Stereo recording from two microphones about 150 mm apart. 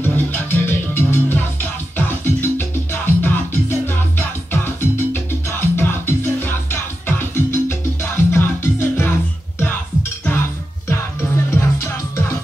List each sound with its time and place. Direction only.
0.0 s music: 15° left (ahead or behind)